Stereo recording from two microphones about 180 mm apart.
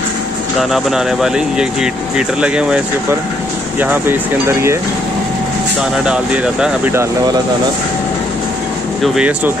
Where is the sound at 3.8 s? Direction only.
10° right (ahead or behind).